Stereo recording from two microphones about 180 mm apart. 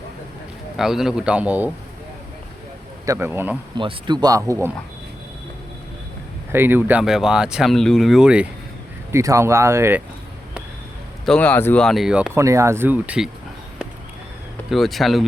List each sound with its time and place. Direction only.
0.8 s speech: centre (ahead or behind)
3.1 s speech: 10° right (ahead or behind)
3.8 s speech: 25° right (ahead or behind)
6.5 s speech: 10° right (ahead or behind)
9.1 s speech: 15° right (ahead or behind)
11.3 s speech: 5° left (ahead or behind)
14.7 s speech: centre (ahead or behind)